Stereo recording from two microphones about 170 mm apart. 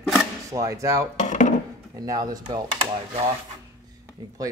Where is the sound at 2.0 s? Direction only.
20° right (ahead or behind).